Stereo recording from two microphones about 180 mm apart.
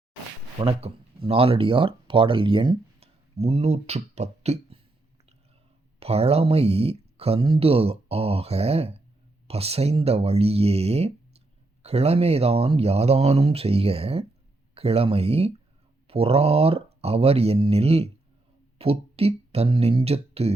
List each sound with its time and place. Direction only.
0.6 s speech: 35° right (ahead or behind)
6.0 s speech: 35° right (ahead or behind)